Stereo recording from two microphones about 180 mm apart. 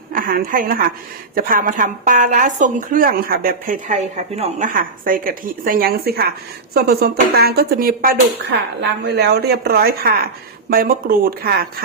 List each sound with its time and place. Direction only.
0.1 s a woman's voice: 50° right (ahead or behind)
4.7 s speech: 50° right (ahead or behind)